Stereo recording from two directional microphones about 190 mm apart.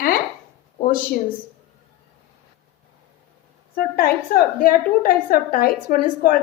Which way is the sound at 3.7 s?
50° left (ahead or behind).